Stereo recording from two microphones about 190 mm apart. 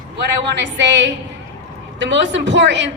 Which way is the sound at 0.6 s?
70° right (ahead or behind).